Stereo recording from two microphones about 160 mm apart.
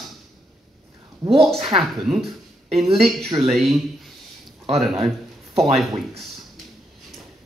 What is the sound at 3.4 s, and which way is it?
Speech, centre (ahead or behind).